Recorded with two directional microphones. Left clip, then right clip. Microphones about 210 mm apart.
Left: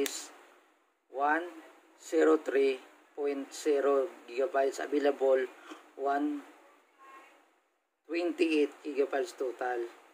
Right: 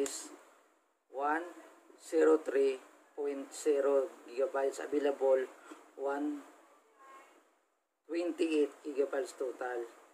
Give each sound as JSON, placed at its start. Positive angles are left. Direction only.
{"t": 1.1, "sound": "a sound", "side_deg": 30}
{"t": 2.0, "sound": "speech", "side_deg": 25}
{"t": 8.1, "sound": "speech", "side_deg": 30}